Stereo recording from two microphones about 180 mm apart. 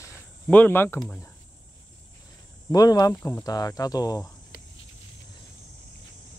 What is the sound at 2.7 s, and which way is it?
Speech, 20° left (ahead or behind).